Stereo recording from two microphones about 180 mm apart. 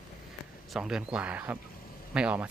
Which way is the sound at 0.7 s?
5° right (ahead or behind).